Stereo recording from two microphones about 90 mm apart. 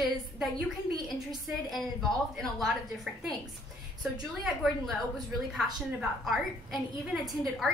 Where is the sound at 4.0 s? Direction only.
Centre (ahead or behind).